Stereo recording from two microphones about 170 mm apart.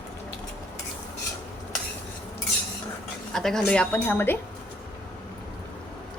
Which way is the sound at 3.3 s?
5° left (ahead or behind).